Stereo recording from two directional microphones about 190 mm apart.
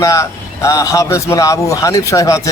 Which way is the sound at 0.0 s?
15° left (ahead or behind).